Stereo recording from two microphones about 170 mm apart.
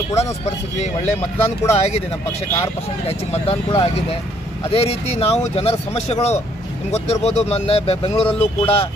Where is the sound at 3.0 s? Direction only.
35° left (ahead or behind).